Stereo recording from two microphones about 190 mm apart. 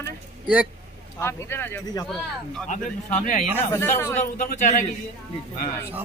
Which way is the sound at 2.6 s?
40° left (ahead or behind).